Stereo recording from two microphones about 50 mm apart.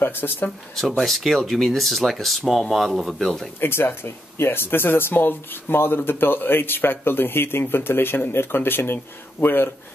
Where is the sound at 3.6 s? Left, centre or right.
Left.